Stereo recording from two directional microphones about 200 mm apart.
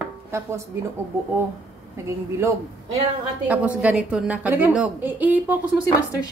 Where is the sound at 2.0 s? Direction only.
15° right (ahead or behind).